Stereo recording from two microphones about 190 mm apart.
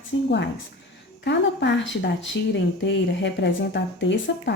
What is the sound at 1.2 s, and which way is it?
A woman's voice, 65° left (ahead or behind).